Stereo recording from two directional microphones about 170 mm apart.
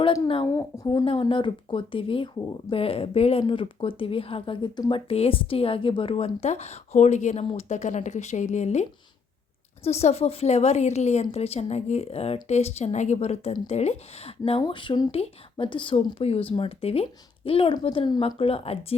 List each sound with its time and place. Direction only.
0.0 s speech: 30° left (ahead or behind)
0.4 s a woman's voice: 20° left (ahead or behind)
1.0 s a woman's voice: 30° left (ahead or behind)